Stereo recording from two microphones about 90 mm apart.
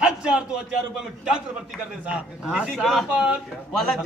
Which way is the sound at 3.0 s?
10° right (ahead or behind).